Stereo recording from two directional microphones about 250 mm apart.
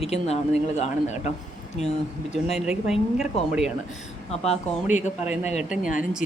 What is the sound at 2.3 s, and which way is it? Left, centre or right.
Speech, centre.